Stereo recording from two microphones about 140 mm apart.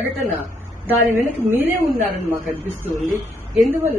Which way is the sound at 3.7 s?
15° right (ahead or behind).